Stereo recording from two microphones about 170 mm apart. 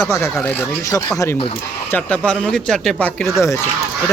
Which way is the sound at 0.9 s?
20° left (ahead or behind).